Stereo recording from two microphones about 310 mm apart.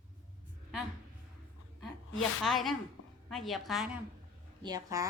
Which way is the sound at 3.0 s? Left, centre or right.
Left.